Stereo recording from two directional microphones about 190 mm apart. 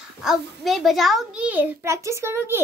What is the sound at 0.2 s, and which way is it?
A child's voice, centre (ahead or behind).